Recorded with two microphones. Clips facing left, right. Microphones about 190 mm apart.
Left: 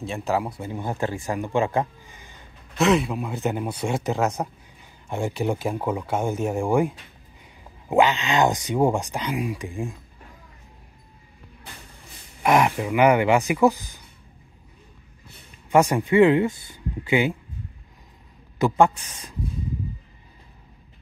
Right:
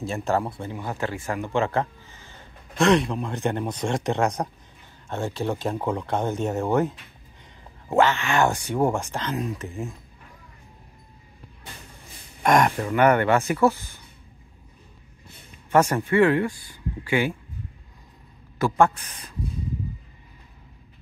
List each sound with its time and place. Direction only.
0.0 s speech: centre (ahead or behind)
0.6 s speech: 15° left (ahead or behind)
2.8 s speech: 5° left (ahead or behind)
12.4 s speech: 5° left (ahead or behind)
15.7 s speech: 15° left (ahead or behind)
18.6 s a man's voice: 20° left (ahead or behind)